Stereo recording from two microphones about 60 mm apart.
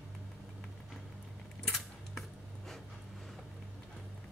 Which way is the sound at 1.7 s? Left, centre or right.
Centre.